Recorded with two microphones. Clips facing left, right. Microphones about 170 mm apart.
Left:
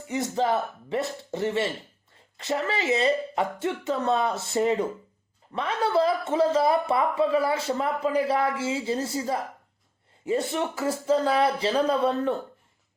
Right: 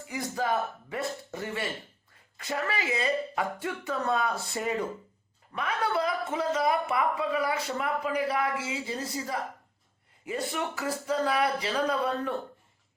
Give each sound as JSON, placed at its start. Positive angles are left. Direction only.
{"t": 0.1, "sound": "a man's voice", "side_deg": 25}